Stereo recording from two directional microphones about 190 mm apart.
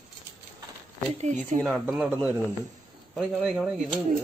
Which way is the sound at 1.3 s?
Centre (ahead or behind).